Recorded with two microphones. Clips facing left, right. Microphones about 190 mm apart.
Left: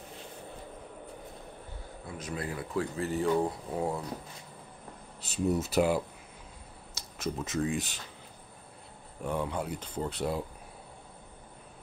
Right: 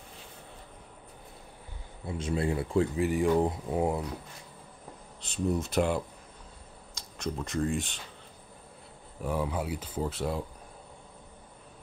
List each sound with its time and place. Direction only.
2.0 s speech: 25° right (ahead or behind)
3.0 s speech: 15° right (ahead or behind)
5.2 s speech: 5° left (ahead or behind)
9.2 s speech: 5° right (ahead or behind)